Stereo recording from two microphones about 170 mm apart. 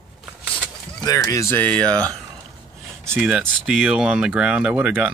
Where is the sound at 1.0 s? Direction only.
20° left (ahead or behind).